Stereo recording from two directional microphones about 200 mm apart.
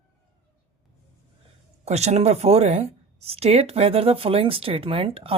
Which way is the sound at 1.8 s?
35° right (ahead or behind).